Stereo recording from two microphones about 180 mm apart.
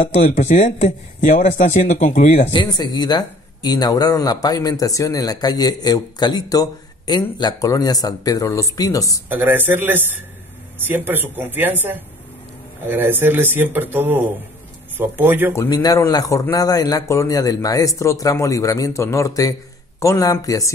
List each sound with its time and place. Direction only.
0.0 s a man's voice: 40° left (ahead or behind); by 9.2 s 20° left (ahead or behind)
9.3 s a man's voice: 10° right (ahead or behind)
15.5 s a man's voice: 20° left (ahead or behind)